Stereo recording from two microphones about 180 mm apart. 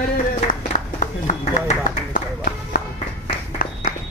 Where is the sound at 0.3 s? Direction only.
45° left (ahead or behind).